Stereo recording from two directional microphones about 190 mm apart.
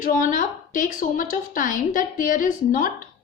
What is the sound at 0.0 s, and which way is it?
A woman's voice, 45° left (ahead or behind).